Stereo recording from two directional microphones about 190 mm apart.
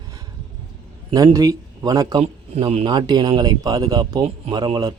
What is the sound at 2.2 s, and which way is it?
Speech, 30° right (ahead or behind).